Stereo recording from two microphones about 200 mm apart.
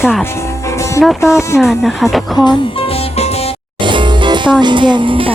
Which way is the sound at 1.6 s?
Centre (ahead or behind).